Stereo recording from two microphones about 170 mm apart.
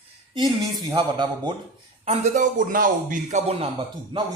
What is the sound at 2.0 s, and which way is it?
Speech, 40° right (ahead or behind).